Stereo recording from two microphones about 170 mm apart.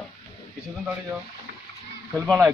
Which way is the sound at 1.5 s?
60° right (ahead or behind).